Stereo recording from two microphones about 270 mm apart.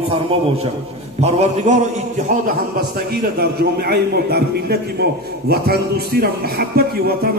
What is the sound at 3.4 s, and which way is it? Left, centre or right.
A man's voice, right.